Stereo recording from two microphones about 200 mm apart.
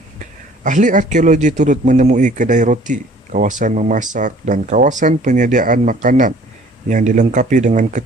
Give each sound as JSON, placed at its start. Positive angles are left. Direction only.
{"t": 0.6, "sound": "a man's voice", "side_deg": -40}